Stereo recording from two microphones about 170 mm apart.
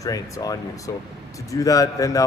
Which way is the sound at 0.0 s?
20° left (ahead or behind).